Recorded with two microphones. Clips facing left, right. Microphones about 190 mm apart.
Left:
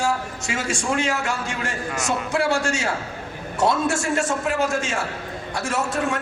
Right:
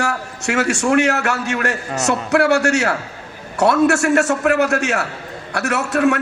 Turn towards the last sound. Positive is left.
turn(degrees=-70)  # may be behind; listen again after turning